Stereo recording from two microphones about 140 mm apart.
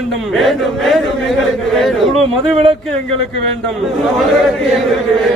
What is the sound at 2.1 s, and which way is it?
Speech, 45° right (ahead or behind).